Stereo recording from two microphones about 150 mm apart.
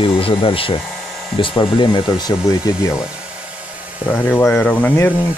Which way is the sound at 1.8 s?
30° left (ahead or behind).